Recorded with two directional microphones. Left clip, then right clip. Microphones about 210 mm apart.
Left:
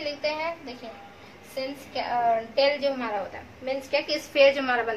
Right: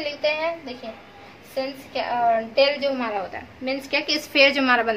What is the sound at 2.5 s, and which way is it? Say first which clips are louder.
A woman's voice: right 3 dB; 40° right (ahead or behind).